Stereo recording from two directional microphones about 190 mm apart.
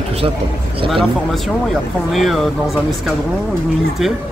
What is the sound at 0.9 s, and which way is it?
Speech, centre (ahead or behind).